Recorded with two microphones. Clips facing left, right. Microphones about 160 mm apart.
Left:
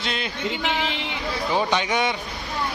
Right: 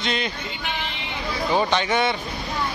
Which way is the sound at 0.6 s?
90° left.